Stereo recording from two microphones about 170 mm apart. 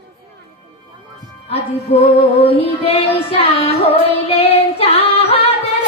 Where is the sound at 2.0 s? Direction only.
35° left (ahead or behind).